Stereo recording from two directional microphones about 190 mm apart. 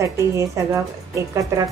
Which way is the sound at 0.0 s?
15° right (ahead or behind).